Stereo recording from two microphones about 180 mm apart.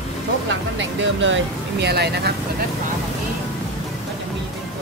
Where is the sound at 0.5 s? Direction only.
90° right; by 2.3 s 65° right (ahead or behind).